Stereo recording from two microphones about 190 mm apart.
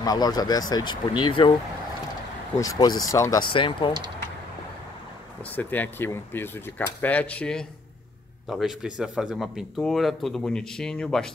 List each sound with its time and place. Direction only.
0.0 s speech: 20° left (ahead or behind)
2.5 s speech: 15° left (ahead or behind)
5.4 s speech: 10° left (ahead or behind)